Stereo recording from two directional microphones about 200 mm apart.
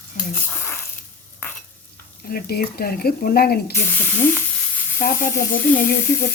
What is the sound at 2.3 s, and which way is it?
Speech, 50° left (ahead or behind).